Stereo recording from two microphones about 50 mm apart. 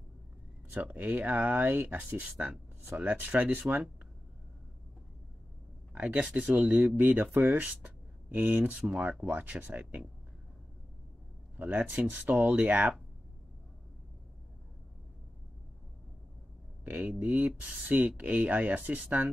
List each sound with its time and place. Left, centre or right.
0.7 s speech: right
2.2 s speech: centre
2.9 s speech: right
5.9 s speech: right
9.3 s speech: right
11.5 s speech: right
16.8 s speech: right